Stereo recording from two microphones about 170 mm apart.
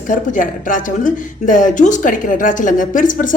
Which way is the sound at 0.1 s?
50° left (ahead or behind).